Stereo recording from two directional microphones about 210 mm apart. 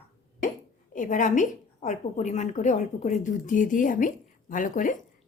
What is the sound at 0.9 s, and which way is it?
A woman's voice, 35° left (ahead or behind).